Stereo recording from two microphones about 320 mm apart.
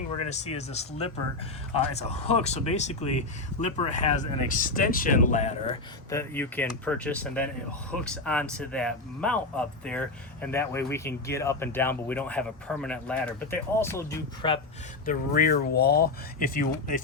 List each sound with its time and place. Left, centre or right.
0.3 s speech: left
6.1 s speech: centre
15.0 s speech: left